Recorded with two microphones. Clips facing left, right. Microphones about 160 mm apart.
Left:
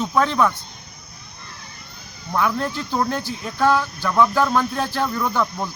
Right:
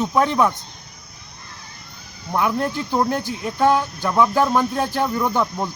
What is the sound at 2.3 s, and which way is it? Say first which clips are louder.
Speech: right 1 dB; 15° right (ahead or behind).